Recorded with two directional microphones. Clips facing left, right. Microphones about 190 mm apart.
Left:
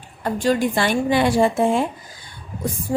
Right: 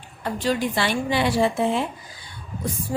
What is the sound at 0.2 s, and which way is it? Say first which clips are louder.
A woman's voice: left 4 dB; 45° left (ahead or behind).